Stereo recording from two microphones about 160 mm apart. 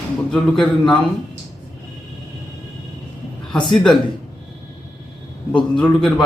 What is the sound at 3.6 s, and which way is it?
Speech, 5° left (ahead or behind).